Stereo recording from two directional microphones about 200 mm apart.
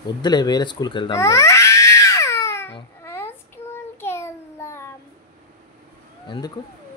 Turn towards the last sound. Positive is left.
turn(degrees=25)  # may be behind; listen again after turning